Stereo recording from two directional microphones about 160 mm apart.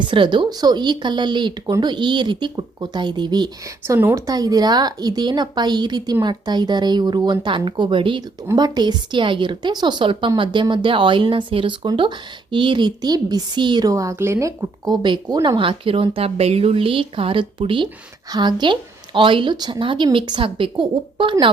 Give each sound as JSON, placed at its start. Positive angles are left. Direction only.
{"t": 0.0, "sound": "a woman's voice", "side_deg": -30}
{"t": 3.9, "sound": "a woman's voice", "side_deg": -15}